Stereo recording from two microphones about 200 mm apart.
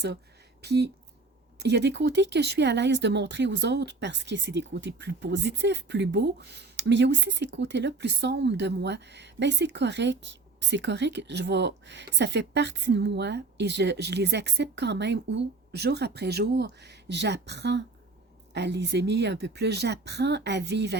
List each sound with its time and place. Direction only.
0.6 s speech: 55° right (ahead or behind)